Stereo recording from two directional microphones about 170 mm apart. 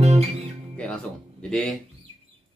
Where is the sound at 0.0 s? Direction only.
40° right (ahead or behind).